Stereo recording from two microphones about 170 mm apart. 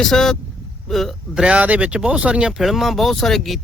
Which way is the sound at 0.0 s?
5° left (ahead or behind).